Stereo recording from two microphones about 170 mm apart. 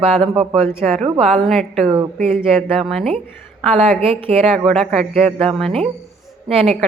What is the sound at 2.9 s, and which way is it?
Speech, centre (ahead or behind).